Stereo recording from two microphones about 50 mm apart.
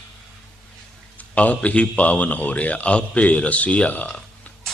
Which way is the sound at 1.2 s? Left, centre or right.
Left.